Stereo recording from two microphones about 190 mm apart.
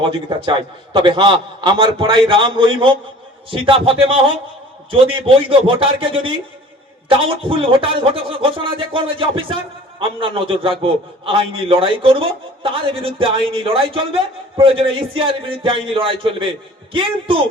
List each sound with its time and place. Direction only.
0.0 s a man's voice: 25° right (ahead or behind)